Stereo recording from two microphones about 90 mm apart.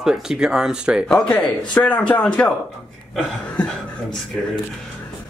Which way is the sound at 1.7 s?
15° left (ahead or behind).